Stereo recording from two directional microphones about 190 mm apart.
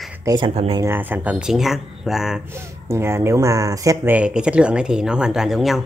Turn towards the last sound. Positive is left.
turn(degrees=0)  # may be behind; listen again after turning